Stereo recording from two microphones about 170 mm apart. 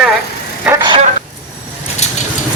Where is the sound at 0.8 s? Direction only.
25° right (ahead or behind).